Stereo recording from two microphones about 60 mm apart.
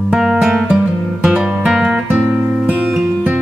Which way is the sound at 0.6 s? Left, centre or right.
Right.